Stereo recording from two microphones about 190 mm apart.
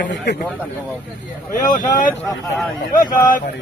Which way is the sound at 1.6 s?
45° left (ahead or behind).